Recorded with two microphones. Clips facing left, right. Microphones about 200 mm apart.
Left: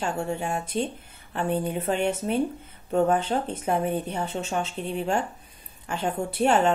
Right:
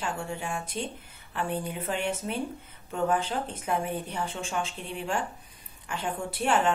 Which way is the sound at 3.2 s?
25° left (ahead or behind).